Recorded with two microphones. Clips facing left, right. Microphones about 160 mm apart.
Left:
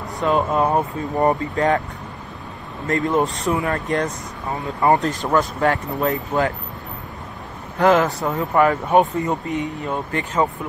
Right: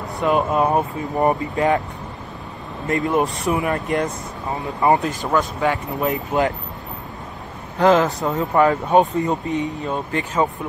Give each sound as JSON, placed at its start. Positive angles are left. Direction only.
{"t": 0.2, "sound": "speech", "side_deg": -15}
{"t": 2.9, "sound": "speech", "side_deg": -15}
{"t": 5.0, "sound": "speech", "side_deg": 0}
{"t": 6.0, "sound": "speech", "side_deg": -20}
{"t": 7.8, "sound": "speech", "side_deg": -20}